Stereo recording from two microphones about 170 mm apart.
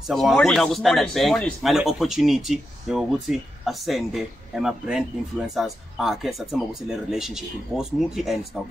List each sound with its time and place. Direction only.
0.1 s speech: centre (ahead or behind)